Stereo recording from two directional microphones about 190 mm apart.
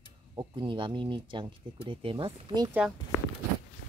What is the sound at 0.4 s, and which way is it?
Speech, 25° right (ahead or behind).